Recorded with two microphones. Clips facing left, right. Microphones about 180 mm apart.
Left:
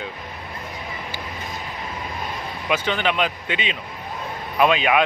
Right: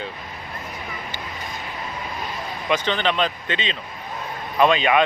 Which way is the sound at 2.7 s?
10° left (ahead or behind).